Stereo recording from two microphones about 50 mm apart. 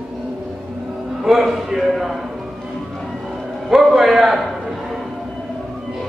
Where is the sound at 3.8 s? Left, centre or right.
Centre.